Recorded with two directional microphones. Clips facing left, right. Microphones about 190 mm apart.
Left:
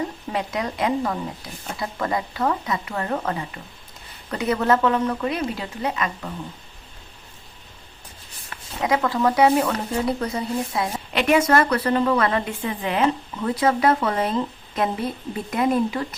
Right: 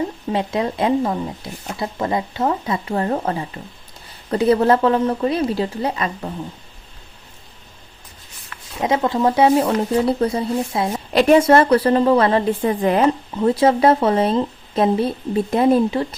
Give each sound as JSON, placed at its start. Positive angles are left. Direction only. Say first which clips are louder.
{"t": 0.3, "sound": "speech", "louder": "right 5 dB", "side_deg": -30}
{"t": 8.8, "sound": "speech", "louder": "right 3 dB", "side_deg": -25}